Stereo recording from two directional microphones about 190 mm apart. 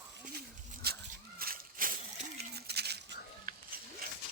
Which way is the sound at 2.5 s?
60° right (ahead or behind).